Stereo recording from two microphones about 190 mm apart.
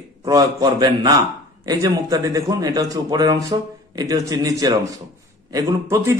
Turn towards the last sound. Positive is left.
turn(degrees=-15)  # may be behind; listen again after turning